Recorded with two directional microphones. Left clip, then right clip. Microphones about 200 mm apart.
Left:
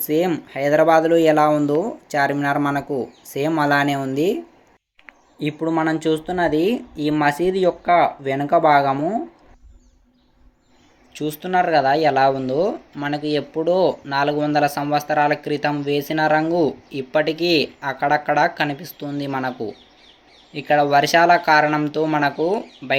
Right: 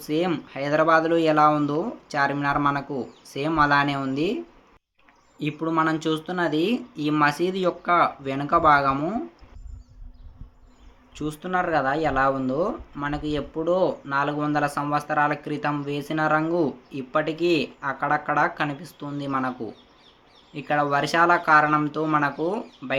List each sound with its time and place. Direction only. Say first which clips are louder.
0.0 s speech: left 5 dB; 10° left (ahead or behind)
5.4 s speech: left 3 dB; 5° left (ahead or behind)
11.1 s speech: left 6 dB; 5° left (ahead or behind)